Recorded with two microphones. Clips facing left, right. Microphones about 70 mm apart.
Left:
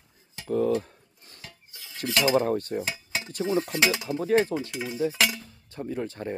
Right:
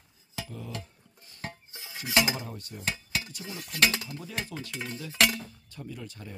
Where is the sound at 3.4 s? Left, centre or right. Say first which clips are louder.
Left 15 dB; left.